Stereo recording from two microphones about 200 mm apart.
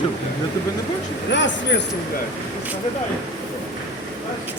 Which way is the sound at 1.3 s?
65° left (ahead or behind).